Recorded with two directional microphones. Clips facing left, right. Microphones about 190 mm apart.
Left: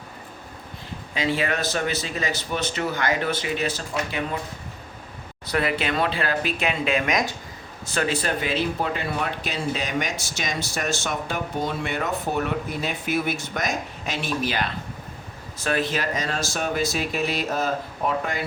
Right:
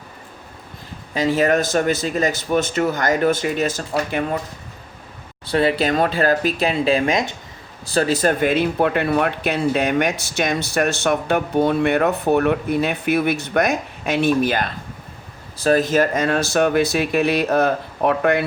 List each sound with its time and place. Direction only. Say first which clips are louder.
1.1 s speech: right 8 dB; 40° right (ahead or behind)
5.5 s speech: right 6 dB; 30° right (ahead or behind); by 14.7 s 50° right (ahead or behind)
15.5 s speech: right 9 dB; 40° right (ahead or behind); by 18.4 s 65° right (ahead or behind)